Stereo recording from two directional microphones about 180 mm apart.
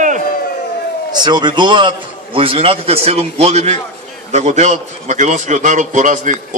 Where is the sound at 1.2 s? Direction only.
25° right (ahead or behind).